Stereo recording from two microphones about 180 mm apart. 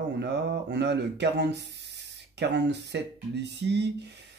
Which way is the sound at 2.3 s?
70° right (ahead or behind).